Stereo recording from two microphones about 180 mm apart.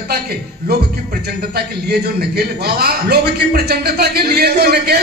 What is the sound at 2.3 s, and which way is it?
A man's voice, 60° right (ahead or behind).